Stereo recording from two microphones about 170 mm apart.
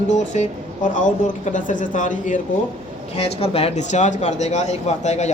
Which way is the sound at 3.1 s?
35° left (ahead or behind).